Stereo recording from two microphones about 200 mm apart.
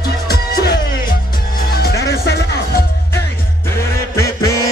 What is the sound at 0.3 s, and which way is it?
Music, 50° left (ahead or behind).